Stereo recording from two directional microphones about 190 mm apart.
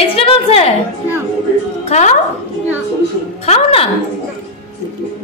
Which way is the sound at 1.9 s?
40° left (ahead or behind).